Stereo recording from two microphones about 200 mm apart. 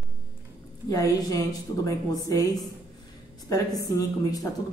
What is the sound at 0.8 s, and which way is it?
Speech, 15° left (ahead or behind).